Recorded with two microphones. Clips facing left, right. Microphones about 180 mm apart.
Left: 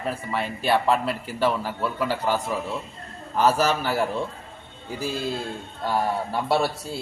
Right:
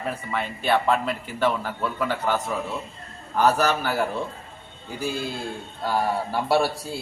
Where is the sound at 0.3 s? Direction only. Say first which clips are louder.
Even; 5° left (ahead or behind).